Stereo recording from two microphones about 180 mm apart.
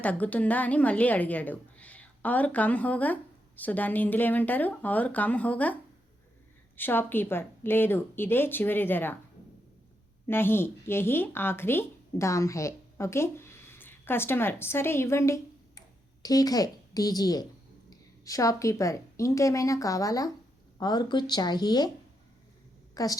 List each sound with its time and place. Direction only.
0.0 s a woman's voice: 10° left (ahead or behind)
6.7 s a woman's voice: 10° left (ahead or behind)
10.2 s a woman's voice: 15° left (ahead or behind)
23.0 s a woman's voice: 20° left (ahead or behind)